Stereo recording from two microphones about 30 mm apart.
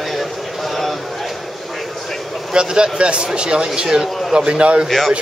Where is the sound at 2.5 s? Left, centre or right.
Right.